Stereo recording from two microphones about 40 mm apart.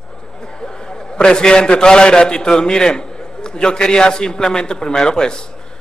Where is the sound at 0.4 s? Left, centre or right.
Centre.